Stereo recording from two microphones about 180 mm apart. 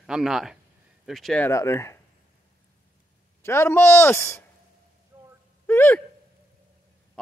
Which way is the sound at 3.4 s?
15° left (ahead or behind).